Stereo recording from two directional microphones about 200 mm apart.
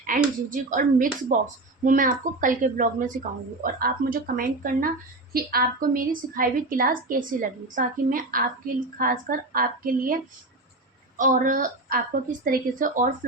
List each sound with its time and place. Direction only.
0.1 s a woman's voice: 45° right (ahead or behind)
11.2 s a woman's voice: 40° right (ahead or behind)